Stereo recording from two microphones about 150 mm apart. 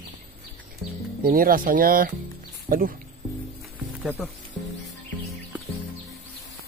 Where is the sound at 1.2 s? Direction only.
75° right (ahead or behind).